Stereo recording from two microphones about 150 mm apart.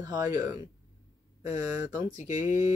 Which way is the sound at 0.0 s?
25° right (ahead or behind).